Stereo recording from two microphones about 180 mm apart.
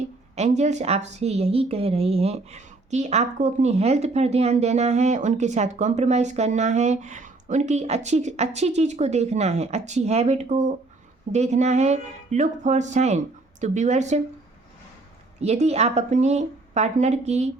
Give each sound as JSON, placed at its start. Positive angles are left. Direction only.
{"t": 0.3, "sound": "a woman's voice", "side_deg": -40}
{"t": 15.4, "sound": "a woman's voice", "side_deg": -35}